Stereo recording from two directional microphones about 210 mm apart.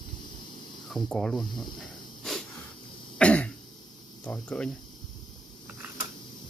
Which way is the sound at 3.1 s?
5° left (ahead or behind).